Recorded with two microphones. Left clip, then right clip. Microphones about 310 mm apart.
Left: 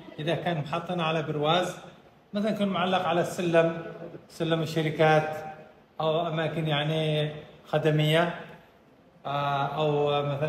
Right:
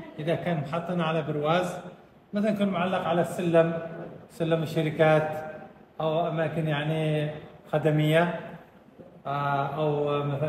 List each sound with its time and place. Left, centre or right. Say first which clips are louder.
0.2 s a man's voice: even; centre